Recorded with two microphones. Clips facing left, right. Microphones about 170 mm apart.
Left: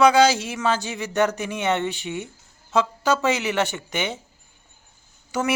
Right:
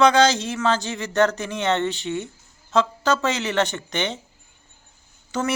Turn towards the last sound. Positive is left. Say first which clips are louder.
# left 1 dB
turn(degrees=10)  # may be behind; listen again after turning